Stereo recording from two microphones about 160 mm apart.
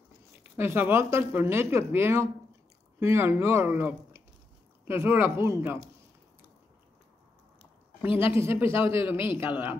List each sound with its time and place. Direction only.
0.4 s speech: 15° right (ahead or behind)
8.1 s speech: 35° left (ahead or behind)
8.4 s speech: 15° right (ahead or behind)